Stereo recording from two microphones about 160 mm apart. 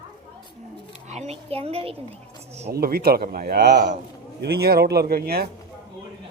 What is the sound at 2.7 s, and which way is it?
A woman's voice, 70° right (ahead or behind).